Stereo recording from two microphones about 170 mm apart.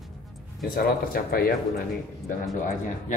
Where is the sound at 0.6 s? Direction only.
60° left (ahead or behind).